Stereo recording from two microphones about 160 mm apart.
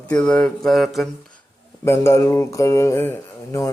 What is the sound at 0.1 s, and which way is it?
Speech, 10° left (ahead or behind).